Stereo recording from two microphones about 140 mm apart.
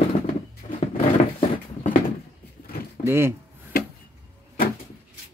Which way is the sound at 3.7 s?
90° left.